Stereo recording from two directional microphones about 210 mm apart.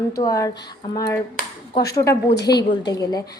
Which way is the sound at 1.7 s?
20° left (ahead or behind).